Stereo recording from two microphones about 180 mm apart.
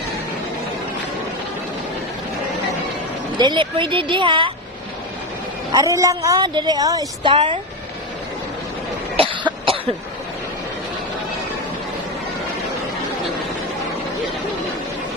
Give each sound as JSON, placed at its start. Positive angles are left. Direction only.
{"t": 3.3, "sound": "a woman's voice", "side_deg": -25}
{"t": 5.7, "sound": "a woman's voice", "side_deg": -20}
{"t": 9.1, "sound": "cough", "side_deg": -30}